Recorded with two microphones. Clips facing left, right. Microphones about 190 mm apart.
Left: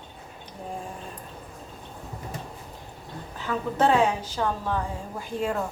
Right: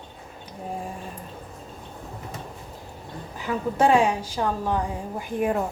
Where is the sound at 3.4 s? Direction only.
10° right (ahead or behind).